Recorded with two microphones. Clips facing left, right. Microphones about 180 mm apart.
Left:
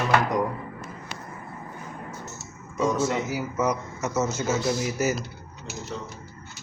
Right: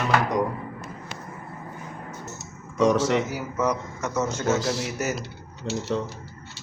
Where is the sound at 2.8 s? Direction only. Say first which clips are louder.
Right 4 dB; 90° right.